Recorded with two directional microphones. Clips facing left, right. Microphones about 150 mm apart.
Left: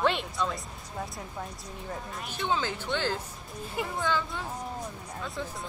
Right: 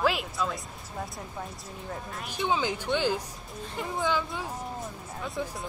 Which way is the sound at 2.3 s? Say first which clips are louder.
Right 2 dB; 15° right (ahead or behind).